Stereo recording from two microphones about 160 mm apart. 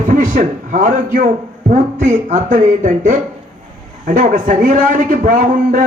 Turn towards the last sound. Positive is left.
turn(degrees=-50)  # may be behind; listen again after turning